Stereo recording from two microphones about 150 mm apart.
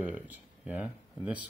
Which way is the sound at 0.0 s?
10° right (ahead or behind).